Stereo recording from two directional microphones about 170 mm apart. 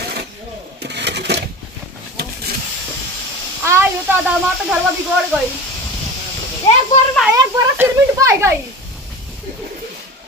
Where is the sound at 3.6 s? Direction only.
15° right (ahead or behind).